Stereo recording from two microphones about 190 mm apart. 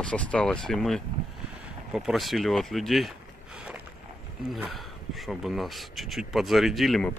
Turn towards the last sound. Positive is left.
turn(degrees=0)  # may be behind; listen again after turning